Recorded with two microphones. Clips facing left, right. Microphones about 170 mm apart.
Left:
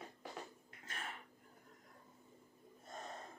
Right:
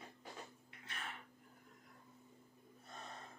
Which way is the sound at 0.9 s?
45° left (ahead or behind).